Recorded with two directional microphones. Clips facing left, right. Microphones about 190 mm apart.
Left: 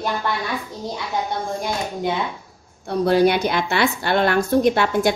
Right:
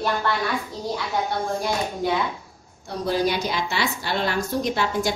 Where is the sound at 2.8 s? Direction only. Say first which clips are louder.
Left 7 dB; 60° left (ahead or behind).